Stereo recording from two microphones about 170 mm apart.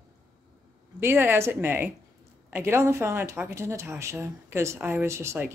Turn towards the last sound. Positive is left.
turn(degrees=-15)  # may be behind; listen again after turning